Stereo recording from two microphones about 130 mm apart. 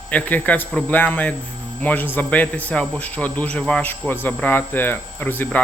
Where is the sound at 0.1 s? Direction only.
10° left (ahead or behind).